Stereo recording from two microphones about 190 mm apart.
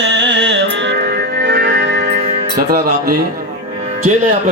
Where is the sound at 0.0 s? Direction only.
65° right (ahead or behind).